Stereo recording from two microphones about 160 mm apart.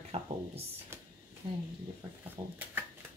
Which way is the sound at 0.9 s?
15° right (ahead or behind).